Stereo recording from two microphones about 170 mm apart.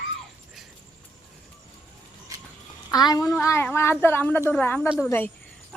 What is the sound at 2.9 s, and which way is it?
A child's voice, 25° left (ahead or behind).